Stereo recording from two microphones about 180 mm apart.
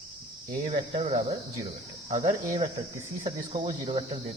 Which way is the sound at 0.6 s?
30° right (ahead or behind).